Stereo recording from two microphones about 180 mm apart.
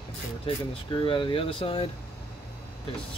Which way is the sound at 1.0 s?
30° left (ahead or behind).